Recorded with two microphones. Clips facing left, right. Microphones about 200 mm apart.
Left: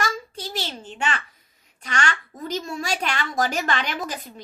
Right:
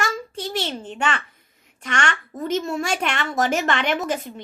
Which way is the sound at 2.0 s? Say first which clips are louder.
Right 4 dB; 25° right (ahead or behind).